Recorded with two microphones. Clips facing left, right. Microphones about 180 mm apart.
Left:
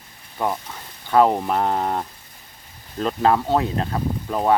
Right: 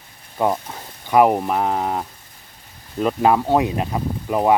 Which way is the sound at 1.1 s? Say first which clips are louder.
Right 2 dB; 10° right (ahead or behind).